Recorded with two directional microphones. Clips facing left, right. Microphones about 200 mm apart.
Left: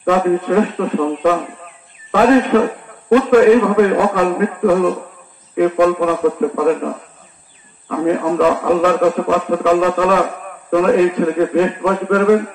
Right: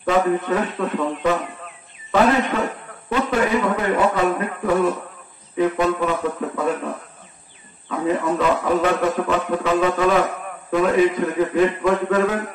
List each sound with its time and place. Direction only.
0.0 s a man's voice: 55° left (ahead or behind)
2.6 s a man's voice: 65° left (ahead or behind)
7.9 s a man's voice: 65° left (ahead or behind)